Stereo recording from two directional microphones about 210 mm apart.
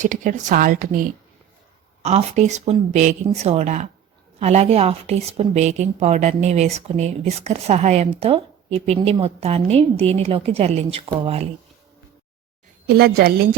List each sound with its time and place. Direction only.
0.0 s a woman's voice: 35° right (ahead or behind)
12.9 s a woman's voice: 50° right (ahead or behind)